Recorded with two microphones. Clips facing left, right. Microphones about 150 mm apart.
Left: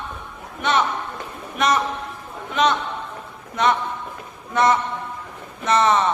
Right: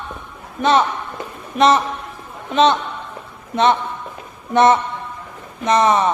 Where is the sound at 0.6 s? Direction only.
35° right (ahead or behind).